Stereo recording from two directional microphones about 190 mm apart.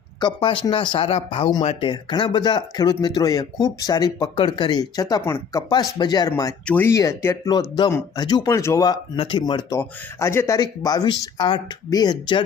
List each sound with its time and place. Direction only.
0.2 s speech: 25° left (ahead or behind)